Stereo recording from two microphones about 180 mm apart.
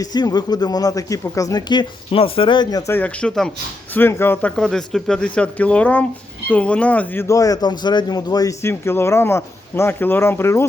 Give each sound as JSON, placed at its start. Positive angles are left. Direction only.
{"t": 0.0, "sound": "speech", "side_deg": 20}